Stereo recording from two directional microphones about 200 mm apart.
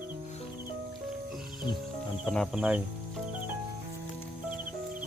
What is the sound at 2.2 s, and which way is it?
Speech, centre (ahead or behind).